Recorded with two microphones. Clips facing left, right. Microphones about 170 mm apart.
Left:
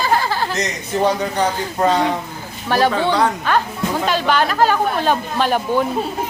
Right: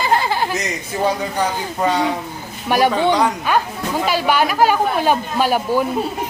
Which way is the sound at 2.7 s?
15° right (ahead or behind).